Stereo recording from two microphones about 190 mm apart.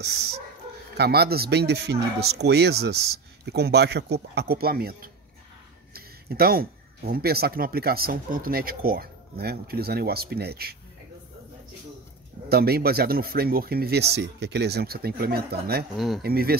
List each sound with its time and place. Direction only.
0.0 s speech: 60° right (ahead or behind)
12.4 s speech: 55° right (ahead or behind)